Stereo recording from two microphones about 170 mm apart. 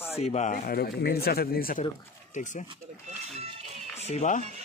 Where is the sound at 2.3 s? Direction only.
45° left (ahead or behind).